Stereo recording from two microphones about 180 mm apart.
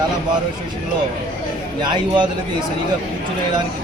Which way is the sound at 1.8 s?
25° right (ahead or behind).